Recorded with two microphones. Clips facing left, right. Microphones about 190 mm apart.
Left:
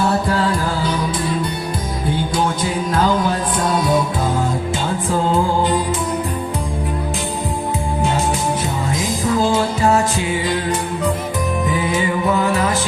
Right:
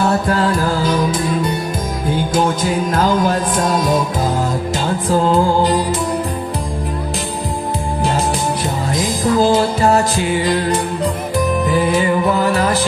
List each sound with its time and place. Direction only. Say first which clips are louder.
2.9 s music: right 1 dB; 45° right (ahead or behind)
9.3 s music: right 4 dB; 35° right (ahead or behind)